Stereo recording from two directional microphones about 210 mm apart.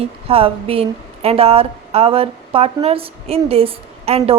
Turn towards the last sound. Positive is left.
turn(degrees=-30)  # may be behind; listen again after turning